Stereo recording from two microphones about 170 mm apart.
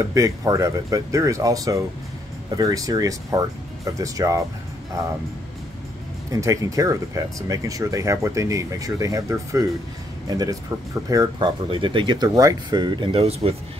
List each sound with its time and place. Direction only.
0.1 s speech: 20° right (ahead or behind)
6.3 s speech: 20° right (ahead or behind)
11.1 s speech: 25° right (ahead or behind)